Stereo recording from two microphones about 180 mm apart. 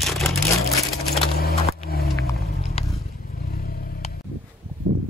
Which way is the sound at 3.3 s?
55° left (ahead or behind).